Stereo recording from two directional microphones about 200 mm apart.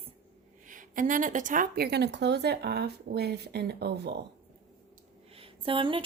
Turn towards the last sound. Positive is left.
turn(degrees=-25)  # may be behind; listen again after turning